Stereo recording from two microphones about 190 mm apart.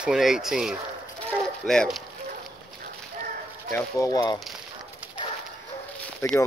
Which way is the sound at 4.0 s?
20° left (ahead or behind).